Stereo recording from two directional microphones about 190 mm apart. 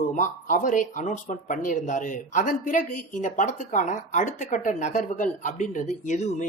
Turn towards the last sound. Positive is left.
turn(degrees=40)  # may be behind; listen again after turning